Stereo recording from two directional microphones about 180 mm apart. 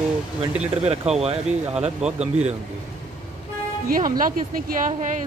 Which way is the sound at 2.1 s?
40° right (ahead or behind).